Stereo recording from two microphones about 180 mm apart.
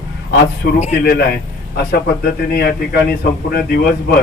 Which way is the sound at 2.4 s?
60° left (ahead or behind).